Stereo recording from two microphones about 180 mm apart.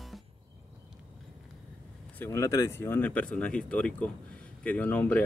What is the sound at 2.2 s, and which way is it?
Speech, 15° left (ahead or behind).